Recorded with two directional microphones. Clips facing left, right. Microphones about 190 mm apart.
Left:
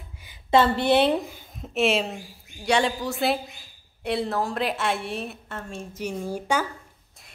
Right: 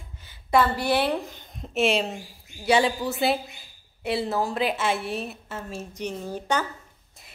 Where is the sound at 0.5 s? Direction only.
25° left (ahead or behind).